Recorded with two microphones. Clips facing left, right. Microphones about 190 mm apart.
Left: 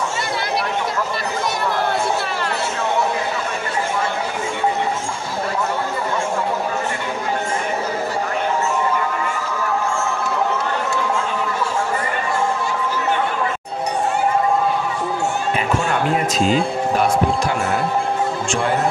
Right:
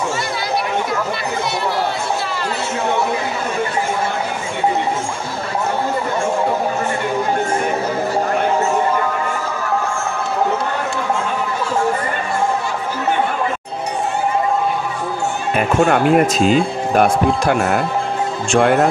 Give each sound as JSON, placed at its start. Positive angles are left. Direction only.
{"t": 15.5, "sound": "speech", "side_deg": -55}